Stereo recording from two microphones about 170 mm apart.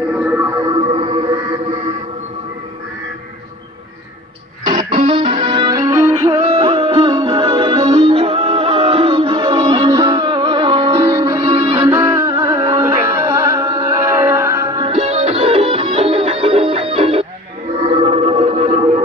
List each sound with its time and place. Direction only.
0.0 s music: 10° right (ahead or behind)
0.6 s music: 25° right (ahead or behind)
4.6 s music: 25° right (ahead or behind)
11.4 s music: 30° right (ahead or behind)
11.9 s music: 15° right (ahead or behind); by 19.0 s 40° right (ahead or behind)